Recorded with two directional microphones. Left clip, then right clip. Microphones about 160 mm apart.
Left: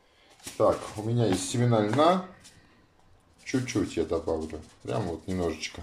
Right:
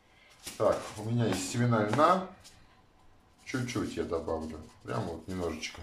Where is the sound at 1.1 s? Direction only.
35° left (ahead or behind).